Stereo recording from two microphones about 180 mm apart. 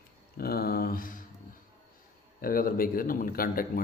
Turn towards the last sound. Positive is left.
turn(degrees=55)  # may be behind; listen again after turning